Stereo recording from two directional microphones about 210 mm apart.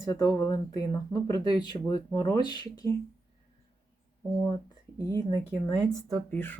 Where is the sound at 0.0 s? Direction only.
15° left (ahead or behind).